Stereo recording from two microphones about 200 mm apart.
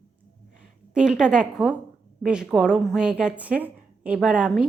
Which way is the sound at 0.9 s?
5° right (ahead or behind).